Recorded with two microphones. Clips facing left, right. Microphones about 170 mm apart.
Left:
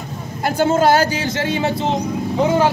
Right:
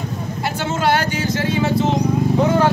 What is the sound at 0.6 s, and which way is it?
Speech, 40° left (ahead or behind).